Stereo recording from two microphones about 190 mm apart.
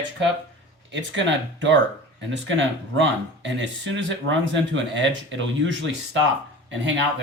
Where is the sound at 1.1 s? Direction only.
75° right (ahead or behind).